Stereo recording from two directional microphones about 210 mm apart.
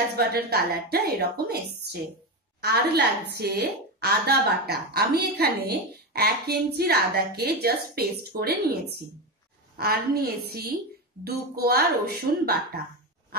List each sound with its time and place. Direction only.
0.1 s a woman's voice: 50° right (ahead or behind)
9.8 s a woman's voice: 45° right (ahead or behind)